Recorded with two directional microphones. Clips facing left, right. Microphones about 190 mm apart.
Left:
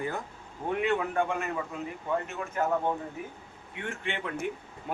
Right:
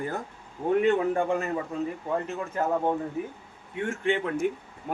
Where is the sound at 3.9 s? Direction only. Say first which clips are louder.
Right 8 dB; 45° right (ahead or behind).